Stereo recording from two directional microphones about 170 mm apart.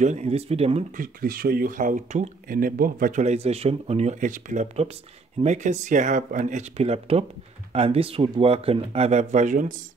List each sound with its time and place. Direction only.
0.0 s speech: 40° right (ahead or behind)
0.9 s speech: 55° right (ahead or behind)